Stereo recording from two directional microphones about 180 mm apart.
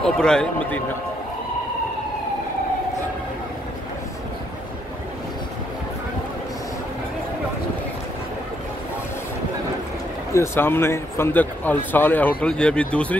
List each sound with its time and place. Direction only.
0.0 s a man's voice: 5° left (ahead or behind)
10.3 s speech: 15° left (ahead or behind)